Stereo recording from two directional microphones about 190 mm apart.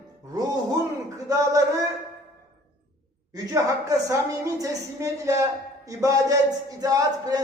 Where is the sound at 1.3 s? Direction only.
20° right (ahead or behind).